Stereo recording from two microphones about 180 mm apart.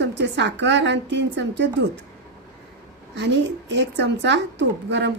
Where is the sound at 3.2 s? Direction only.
75° right (ahead or behind).